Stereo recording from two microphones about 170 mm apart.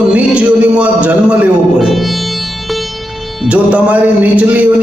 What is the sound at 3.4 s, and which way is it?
Music, 5° right (ahead or behind).